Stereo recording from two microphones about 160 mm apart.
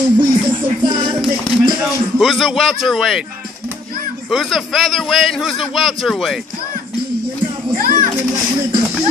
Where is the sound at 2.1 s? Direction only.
Centre (ahead or behind).